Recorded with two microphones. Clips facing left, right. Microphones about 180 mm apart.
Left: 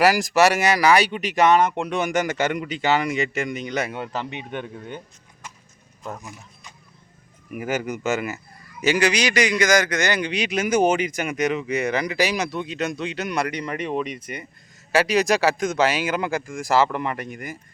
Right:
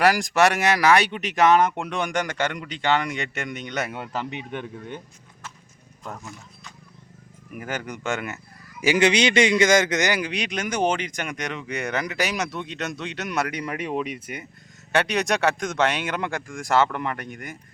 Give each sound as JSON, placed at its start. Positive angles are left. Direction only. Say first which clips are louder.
{"t": 0.0, "sound": "speech", "louder": "left 2 dB", "side_deg": 0}
{"t": 7.5, "sound": "speech", "louder": "left 6 dB", "side_deg": 10}
{"t": 9.0, "sound": "a man's voice", "louder": "right 3 dB", "side_deg": -25}
{"t": 10.1, "sound": "speech", "louder": "left 2 dB", "side_deg": -5}